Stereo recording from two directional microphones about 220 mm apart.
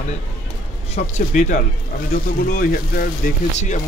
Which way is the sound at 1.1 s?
35° left (ahead or behind).